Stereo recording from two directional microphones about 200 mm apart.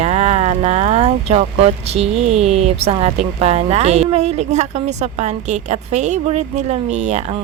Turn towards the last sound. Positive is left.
turn(degrees=-35)  # may be behind; listen again after turning